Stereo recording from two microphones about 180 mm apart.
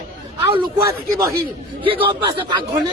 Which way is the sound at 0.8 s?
15° right (ahead or behind).